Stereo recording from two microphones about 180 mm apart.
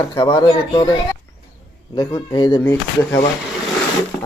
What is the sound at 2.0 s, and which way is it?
Speech, 25° left (ahead or behind).